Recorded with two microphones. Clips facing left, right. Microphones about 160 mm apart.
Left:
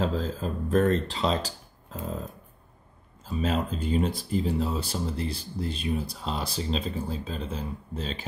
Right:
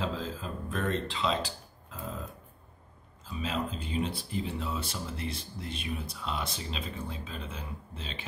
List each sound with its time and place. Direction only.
0.0 s speech: 40° left (ahead or behind)
3.3 s speech: 40° left (ahead or behind)